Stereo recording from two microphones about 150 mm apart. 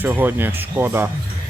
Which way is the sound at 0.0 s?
10° right (ahead or behind).